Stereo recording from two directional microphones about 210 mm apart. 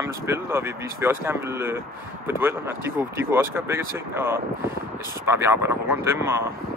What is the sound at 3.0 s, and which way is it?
Speech, 10° right (ahead or behind).